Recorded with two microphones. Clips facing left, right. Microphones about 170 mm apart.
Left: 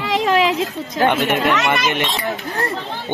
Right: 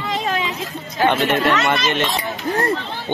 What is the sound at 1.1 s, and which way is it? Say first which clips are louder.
Speech: right 2 dB; 15° left (ahead or behind).